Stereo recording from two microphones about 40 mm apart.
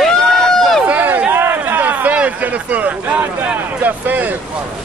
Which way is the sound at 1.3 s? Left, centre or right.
Right.